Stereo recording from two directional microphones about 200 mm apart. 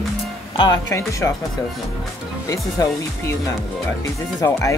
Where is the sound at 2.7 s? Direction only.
15° left (ahead or behind).